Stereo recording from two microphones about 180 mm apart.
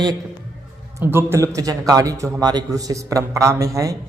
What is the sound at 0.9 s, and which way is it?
A man's voice, 15° right (ahead or behind).